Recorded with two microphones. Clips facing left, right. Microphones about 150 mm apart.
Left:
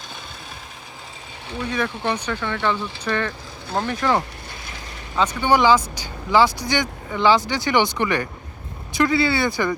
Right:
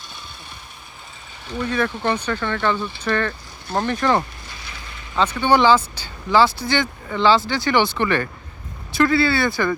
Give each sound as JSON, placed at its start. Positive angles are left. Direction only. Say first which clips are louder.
{"t": 1.7, "sound": "speech", "louder": "right 2 dB", "side_deg": 15}